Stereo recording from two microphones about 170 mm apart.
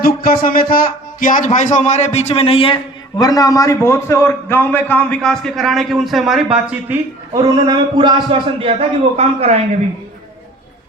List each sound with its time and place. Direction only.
0.0 s a man's voice: 60° left (ahead or behind); by 2.7 s 35° left (ahead or behind)
3.2 s a man's voice: 20° left (ahead or behind); by 7.0 s 10° right (ahead or behind)
7.3 s a man's voice: 25° right (ahead or behind); by 9.6 s 40° right (ahead or behind)